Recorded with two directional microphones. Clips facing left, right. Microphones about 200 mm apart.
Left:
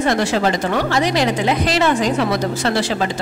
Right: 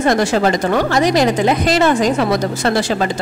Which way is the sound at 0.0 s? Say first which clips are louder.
Right 3 dB; 45° right (ahead or behind).